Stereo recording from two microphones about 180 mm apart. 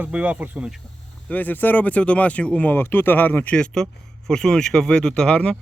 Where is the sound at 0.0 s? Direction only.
10° right (ahead or behind).